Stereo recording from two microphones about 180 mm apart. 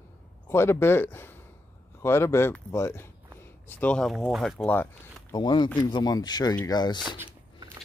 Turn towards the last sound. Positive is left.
turn(degrees=20)  # may be behind; listen again after turning